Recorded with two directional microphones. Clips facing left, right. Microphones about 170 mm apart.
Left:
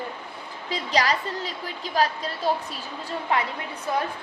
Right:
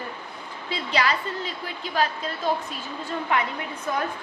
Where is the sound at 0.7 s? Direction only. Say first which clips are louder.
Left 1 dB; 40° left (ahead or behind).